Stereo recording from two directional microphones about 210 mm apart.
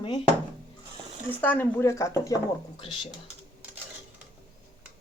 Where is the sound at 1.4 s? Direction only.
10° left (ahead or behind).